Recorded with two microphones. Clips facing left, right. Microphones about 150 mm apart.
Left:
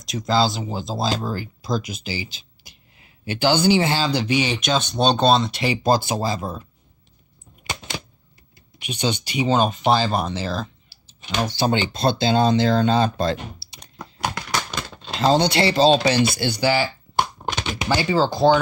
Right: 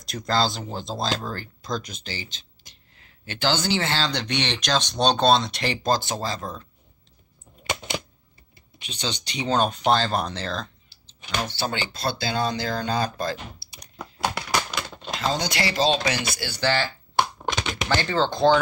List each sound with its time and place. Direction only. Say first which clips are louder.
0.0 s speech: left 4 dB; centre (ahead or behind)
7.7 s coin: right 3 dB; 15° left (ahead or behind)
8.7 s speech: left 7 dB; 10° left (ahead or behind)
11.2 s speech: left 6 dB; 15° left (ahead or behind)
15.1 s speech: left 8 dB; 30° left (ahead or behind)
16.5 s typing: left 1 dB; 10° left (ahead or behind)
17.7 s speech: left 4 dB; 10° left (ahead or behind)